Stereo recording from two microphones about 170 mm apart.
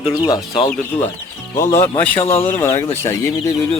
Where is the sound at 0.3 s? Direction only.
20° left (ahead or behind).